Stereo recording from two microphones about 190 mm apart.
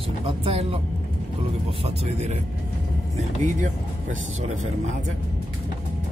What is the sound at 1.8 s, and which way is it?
Speech, 35° right (ahead or behind).